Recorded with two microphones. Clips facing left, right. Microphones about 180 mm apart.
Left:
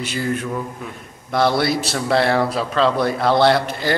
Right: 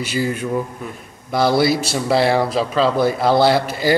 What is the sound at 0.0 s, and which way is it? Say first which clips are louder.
A man's voice: right 2 dB; 5° right (ahead or behind).